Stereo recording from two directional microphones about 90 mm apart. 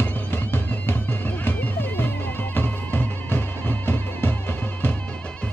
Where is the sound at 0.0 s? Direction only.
25° left (ahead or behind).